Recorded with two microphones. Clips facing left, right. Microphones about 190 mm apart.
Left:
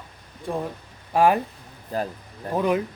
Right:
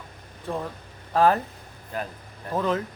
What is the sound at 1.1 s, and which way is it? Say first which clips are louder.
Speech: left 1 dB; 15° left (ahead or behind).